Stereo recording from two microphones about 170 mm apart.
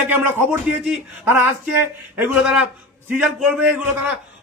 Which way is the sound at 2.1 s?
5° right (ahead or behind).